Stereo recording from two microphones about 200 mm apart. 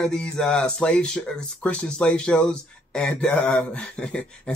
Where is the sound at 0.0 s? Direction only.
5° left (ahead or behind).